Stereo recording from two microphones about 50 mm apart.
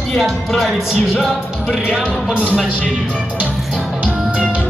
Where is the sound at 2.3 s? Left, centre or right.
Right.